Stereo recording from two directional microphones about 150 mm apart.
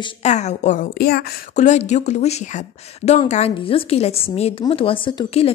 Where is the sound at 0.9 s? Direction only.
90° left.